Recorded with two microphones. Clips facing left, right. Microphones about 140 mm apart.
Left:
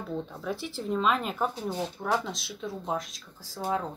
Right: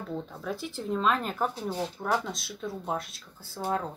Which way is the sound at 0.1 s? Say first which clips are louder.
Left 2 dB; centre (ahead or behind).